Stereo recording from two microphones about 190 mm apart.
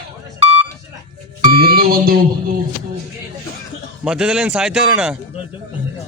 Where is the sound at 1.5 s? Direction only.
50° right (ahead or behind).